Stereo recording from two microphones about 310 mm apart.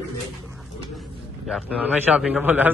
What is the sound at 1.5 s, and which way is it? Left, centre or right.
A man's voice, centre.